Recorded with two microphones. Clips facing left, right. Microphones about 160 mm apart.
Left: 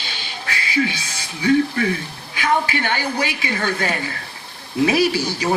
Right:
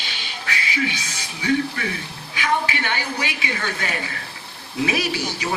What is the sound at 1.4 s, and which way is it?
A woman's voice, 35° left (ahead or behind).